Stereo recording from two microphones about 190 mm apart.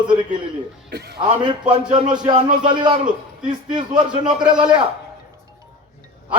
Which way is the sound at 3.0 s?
40° right (ahead or behind).